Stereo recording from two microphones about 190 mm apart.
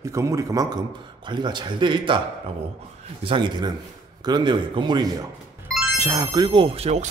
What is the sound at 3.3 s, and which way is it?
Speech, 25° right (ahead or behind).